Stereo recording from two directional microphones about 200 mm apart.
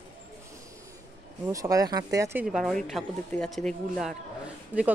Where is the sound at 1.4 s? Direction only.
15° right (ahead or behind).